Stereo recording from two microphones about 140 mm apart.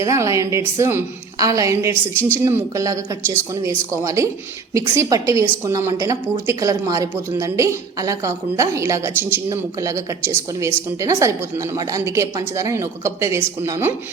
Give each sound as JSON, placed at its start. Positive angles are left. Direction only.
{"t": 0.0, "sound": "a woman's voice", "side_deg": -20}